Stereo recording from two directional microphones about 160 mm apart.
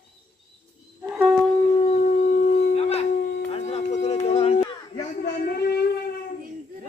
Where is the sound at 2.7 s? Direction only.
40° left (ahead or behind).